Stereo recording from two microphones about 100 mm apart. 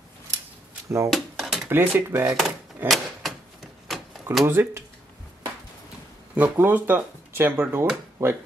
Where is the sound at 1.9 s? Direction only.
25° right (ahead or behind).